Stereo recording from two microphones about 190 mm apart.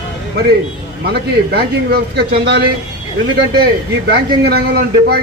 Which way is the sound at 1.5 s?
55° right (ahead or behind).